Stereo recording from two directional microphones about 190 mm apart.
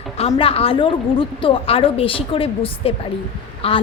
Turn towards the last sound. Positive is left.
turn(degrees=30)  # may be behind; listen again after turning